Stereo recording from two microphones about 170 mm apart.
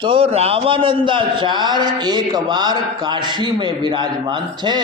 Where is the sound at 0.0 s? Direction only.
30° right (ahead or behind).